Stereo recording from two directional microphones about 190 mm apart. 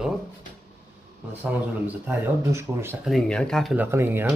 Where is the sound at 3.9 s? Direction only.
10° right (ahead or behind).